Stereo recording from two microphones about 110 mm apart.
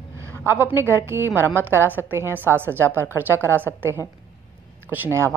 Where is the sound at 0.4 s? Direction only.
25° right (ahead or behind).